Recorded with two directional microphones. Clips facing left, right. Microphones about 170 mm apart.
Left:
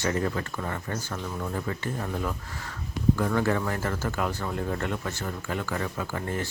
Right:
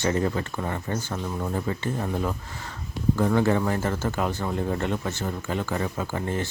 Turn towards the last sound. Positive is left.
turn(degrees=-25)  # may be behind; listen again after turning